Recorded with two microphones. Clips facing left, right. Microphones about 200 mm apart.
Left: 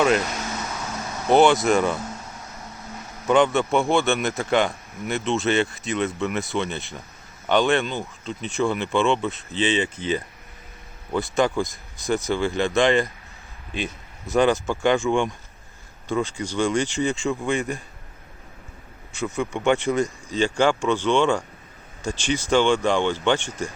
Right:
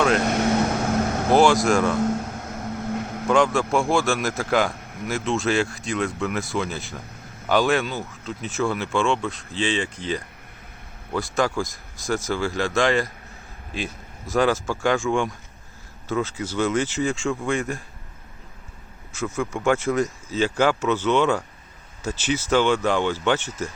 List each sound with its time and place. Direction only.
0.3 s vehicle: 65° right (ahead or behind)
1.3 s a man's voice: centre (ahead or behind)
2.0 s vehicle: 55° right (ahead or behind)
3.2 s a man's voice: centre (ahead or behind)
19.1 s a man's voice: centre (ahead or behind)